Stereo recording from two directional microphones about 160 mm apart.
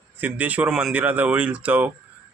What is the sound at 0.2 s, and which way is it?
Speech, 10° right (ahead or behind).